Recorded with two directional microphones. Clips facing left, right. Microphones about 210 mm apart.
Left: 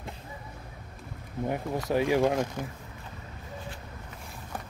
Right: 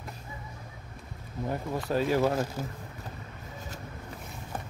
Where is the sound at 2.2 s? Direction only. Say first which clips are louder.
Left 1 dB; 5° right (ahead or behind).